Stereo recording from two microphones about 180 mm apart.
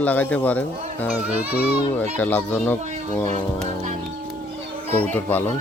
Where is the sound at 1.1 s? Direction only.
10° right (ahead or behind).